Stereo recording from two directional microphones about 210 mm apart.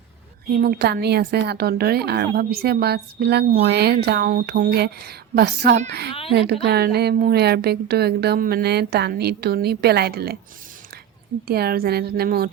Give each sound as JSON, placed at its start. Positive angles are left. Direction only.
{"t": 0.5, "sound": "a woman's voice", "side_deg": -45}
{"t": 11.4, "sound": "a woman's voice", "side_deg": -45}